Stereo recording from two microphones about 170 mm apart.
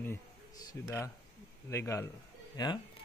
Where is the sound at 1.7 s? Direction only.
15° left (ahead or behind).